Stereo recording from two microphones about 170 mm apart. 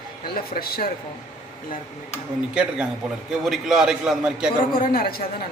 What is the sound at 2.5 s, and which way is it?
A man's voice, 5° right (ahead or behind).